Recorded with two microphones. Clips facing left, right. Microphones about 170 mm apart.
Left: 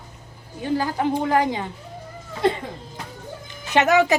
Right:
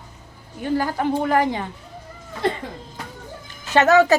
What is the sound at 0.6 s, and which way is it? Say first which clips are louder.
Speech: right 1 dB; 20° left (ahead or behind).